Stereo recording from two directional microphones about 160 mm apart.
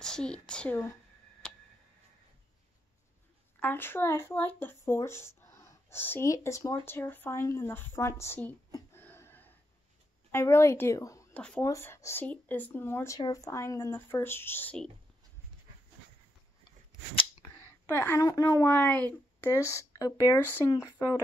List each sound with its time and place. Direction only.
0.0 s speech: 5° left (ahead or behind)
3.5 s speech: 10° left (ahead or behind)
8.7 s wheeze: 15° left (ahead or behind)
10.3 s a woman's voice: 15° left (ahead or behind)
11.3 s speech: 5° left (ahead or behind)
11.6 s speech: 15° left (ahead or behind)
17.1 s scissors: 35° left (ahead or behind)
17.6 s speech: 15° left (ahead or behind)